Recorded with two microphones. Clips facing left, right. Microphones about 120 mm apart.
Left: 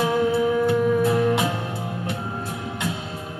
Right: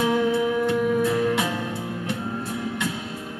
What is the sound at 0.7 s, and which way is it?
Music, 30° left (ahead or behind).